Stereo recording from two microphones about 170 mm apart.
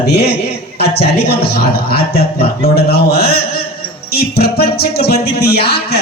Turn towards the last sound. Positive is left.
turn(degrees=70)  # may be behind; listen again after turning